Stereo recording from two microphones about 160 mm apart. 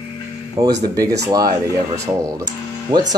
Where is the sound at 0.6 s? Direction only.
20° right (ahead or behind).